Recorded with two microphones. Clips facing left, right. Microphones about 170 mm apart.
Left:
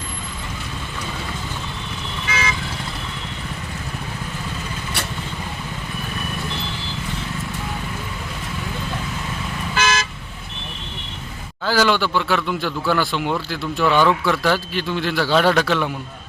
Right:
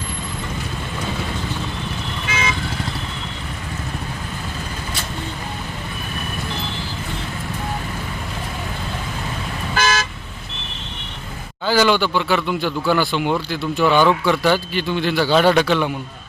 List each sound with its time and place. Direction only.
9.7 s car: 40° right (ahead or behind)
11.6 s a man's voice: centre (ahead or behind)